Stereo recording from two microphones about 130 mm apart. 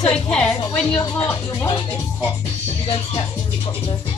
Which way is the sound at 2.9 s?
50° left (ahead or behind).